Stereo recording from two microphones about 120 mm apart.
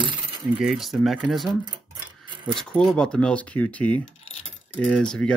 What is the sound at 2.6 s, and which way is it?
Speech, 5° left (ahead or behind).